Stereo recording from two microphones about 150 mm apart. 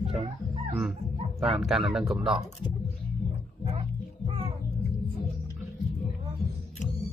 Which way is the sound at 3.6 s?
40° right (ahead or behind).